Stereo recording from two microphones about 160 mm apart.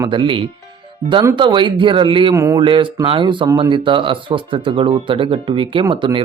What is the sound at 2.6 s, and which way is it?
Speech, 30° right (ahead or behind).